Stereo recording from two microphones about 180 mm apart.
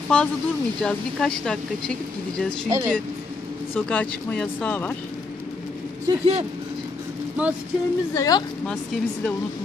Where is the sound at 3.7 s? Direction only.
10° left (ahead or behind).